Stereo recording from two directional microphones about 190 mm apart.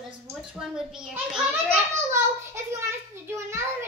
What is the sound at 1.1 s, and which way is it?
Speech, 5° right (ahead or behind).